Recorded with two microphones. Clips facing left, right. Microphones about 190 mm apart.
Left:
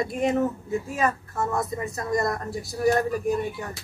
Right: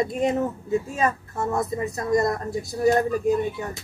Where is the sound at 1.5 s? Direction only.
20° right (ahead or behind).